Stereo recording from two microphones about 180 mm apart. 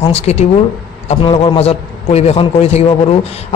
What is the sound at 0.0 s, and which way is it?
A man's voice, 35° left (ahead or behind).